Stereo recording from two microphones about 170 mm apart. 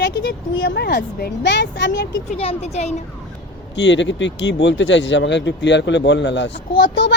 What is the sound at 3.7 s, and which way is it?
Speech, 90° left.